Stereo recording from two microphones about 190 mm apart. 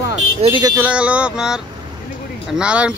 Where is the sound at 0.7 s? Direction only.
5° right (ahead or behind).